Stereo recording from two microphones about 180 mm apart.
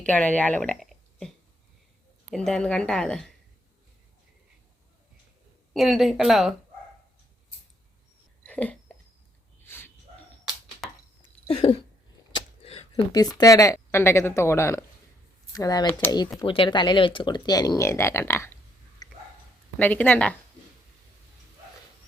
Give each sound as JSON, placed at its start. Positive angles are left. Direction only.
{"t": 0.0, "sound": "speech", "side_deg": 10}
{"t": 2.3, "sound": "a woman's voice", "side_deg": 5}
{"t": 5.7, "sound": "a woman's voice", "side_deg": 0}
{"t": 8.4, "sound": "a sound", "side_deg": 10}
{"t": 11.4, "sound": "a sound", "side_deg": 30}
{"t": 12.9, "sound": "speech", "side_deg": 20}
{"t": 16.4, "sound": "speech", "side_deg": 25}
{"t": 19.7, "sound": "speech", "side_deg": 10}